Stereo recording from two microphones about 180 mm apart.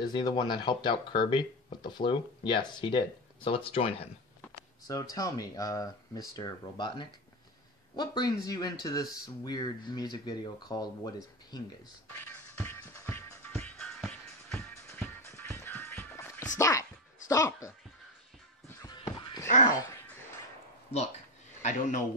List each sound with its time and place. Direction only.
0.1 s speech: 25° left (ahead or behind)
4.8 s speech: 20° left (ahead or behind)
12.3 s music: 15° left (ahead or behind)
16.5 s speech: 15° left (ahead or behind)
18.8 s a sound: 20° left (ahead or behind)
21.6 s a man's voice: 40° left (ahead or behind)